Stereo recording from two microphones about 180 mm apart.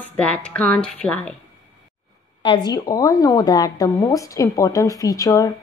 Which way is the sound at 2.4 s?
25° left (ahead or behind).